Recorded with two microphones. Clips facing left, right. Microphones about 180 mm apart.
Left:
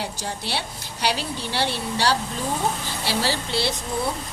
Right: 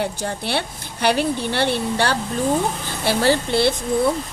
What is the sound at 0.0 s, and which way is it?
A woman's voice, 55° right (ahead or behind).